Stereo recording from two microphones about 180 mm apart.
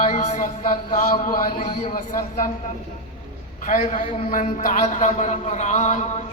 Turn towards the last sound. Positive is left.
turn(degrees=40)  # may be behind; listen again after turning